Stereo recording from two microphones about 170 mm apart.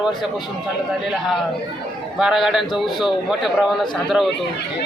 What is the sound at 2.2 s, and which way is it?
A man's voice, centre (ahead or behind).